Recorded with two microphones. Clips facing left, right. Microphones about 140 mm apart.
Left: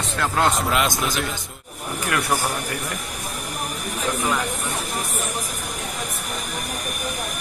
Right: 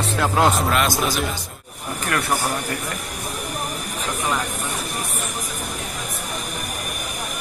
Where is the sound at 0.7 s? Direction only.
20° left (ahead or behind).